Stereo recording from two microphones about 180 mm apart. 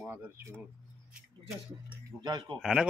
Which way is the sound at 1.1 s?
5° right (ahead or behind).